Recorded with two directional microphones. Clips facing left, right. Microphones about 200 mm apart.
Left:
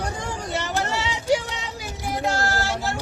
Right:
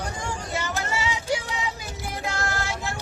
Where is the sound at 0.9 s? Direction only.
70° left (ahead or behind).